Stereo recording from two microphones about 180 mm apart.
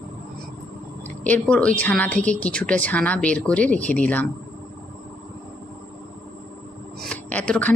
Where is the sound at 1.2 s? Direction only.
5° left (ahead or behind).